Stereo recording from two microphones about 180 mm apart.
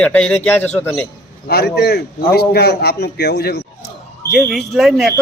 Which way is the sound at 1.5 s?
60° left (ahead or behind).